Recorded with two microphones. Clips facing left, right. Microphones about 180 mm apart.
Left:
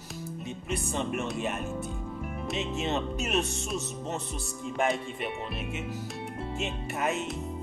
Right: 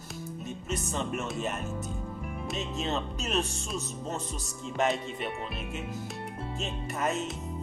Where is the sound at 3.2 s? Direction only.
35° right (ahead or behind).